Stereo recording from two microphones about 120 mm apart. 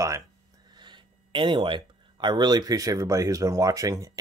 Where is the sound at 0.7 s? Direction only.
40° right (ahead or behind).